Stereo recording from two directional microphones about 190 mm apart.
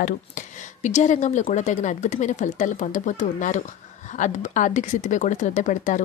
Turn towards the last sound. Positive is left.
turn(degrees=40)  # may be behind; listen again after turning